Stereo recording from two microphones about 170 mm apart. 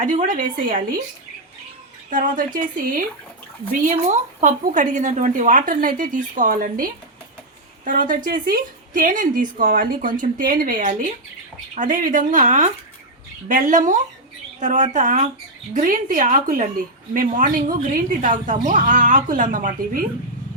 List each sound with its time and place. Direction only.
0.0 s a woman's voice: 50° right (ahead or behind)
2.0 s a woman's voice: 50° right (ahead or behind)
3.8 s a woman's voice: 45° right (ahead or behind)